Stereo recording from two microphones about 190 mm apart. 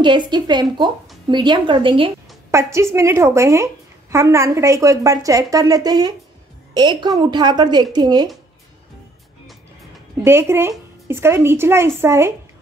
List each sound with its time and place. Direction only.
0.0 s a woman's voice: 25° right (ahead or behind)
2.5 s a woman's voice: 15° right (ahead or behind)
10.2 s a woman's voice: 15° right (ahead or behind)